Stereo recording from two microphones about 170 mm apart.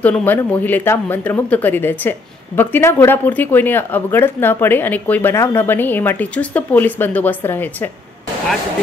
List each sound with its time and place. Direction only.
0.0 s speech: 10° left (ahead or behind)